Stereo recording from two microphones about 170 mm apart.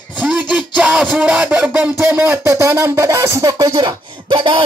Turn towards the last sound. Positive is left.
turn(degrees=-30)  # may be behind; listen again after turning